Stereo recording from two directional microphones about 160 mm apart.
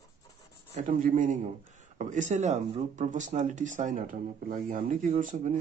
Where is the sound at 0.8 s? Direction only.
55° right (ahead or behind).